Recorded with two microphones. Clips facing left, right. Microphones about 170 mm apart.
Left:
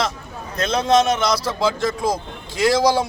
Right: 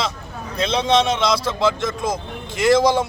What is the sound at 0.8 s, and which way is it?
Speech, centre (ahead or behind).